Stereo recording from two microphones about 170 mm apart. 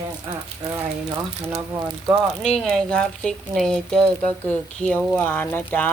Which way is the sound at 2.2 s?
5° left (ahead or behind).